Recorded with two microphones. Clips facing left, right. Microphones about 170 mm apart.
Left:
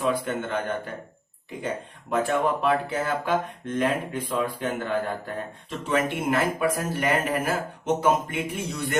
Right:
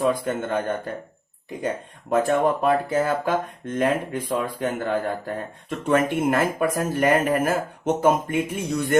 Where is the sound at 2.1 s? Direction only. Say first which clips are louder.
Right 4 dB; 45° right (ahead or behind).